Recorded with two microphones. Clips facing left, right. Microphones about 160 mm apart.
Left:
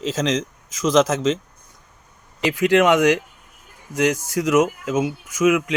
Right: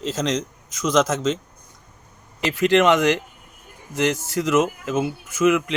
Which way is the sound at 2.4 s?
10° left (ahead or behind).